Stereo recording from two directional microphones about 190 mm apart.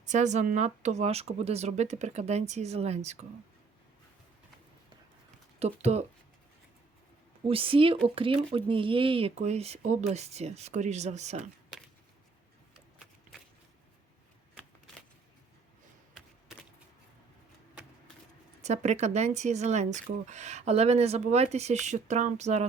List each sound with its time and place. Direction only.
0.0 s speech: 40° right (ahead or behind)
5.5 s speech: 35° right (ahead or behind)
7.4 s a woman's voice: 30° right (ahead or behind)
18.6 s speech: 35° right (ahead or behind)